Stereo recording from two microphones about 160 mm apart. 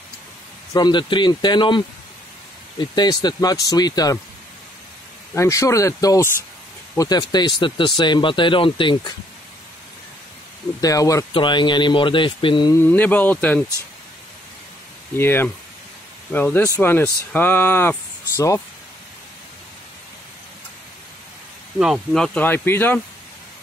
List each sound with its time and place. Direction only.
0.7 s speech: 30° left (ahead or behind)
2.8 s speech: 25° left (ahead or behind)
5.3 s speech: 20° left (ahead or behind)
10.8 s speech: 20° left (ahead or behind)
12.7 s speech: 10° left (ahead or behind)
15.1 s speech: 15° left (ahead or behind)
21.7 s speech: 5° right (ahead or behind)